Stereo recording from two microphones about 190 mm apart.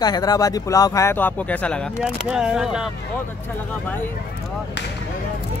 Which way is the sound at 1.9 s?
5° right (ahead or behind).